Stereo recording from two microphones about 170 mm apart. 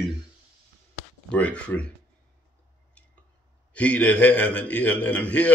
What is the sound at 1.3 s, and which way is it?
Speech, 5° left (ahead or behind).